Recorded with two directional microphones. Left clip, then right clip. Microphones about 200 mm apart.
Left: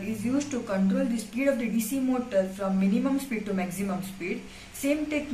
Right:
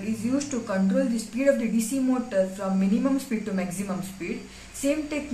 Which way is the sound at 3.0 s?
40° right (ahead or behind).